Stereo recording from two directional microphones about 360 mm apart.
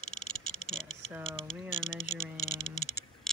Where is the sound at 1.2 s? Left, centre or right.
Centre.